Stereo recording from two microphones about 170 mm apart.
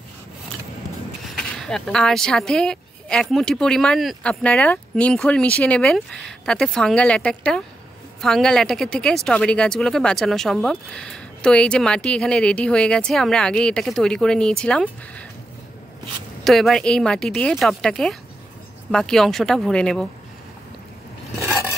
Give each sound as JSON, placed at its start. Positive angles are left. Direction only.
{"t": 1.3, "sound": "a woman's voice", "side_deg": 0}
{"t": 16.4, "sound": "a woman's voice", "side_deg": 0}